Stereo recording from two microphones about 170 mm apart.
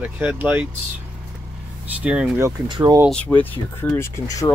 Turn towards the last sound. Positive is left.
turn(degrees=20)  # may be behind; listen again after turning